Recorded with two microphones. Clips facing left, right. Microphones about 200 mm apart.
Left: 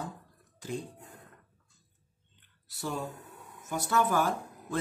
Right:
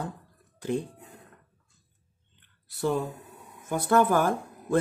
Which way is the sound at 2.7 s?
60° right (ahead or behind).